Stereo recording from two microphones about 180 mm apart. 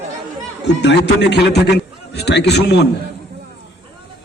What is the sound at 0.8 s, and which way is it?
A man's voice, 75° left (ahead or behind).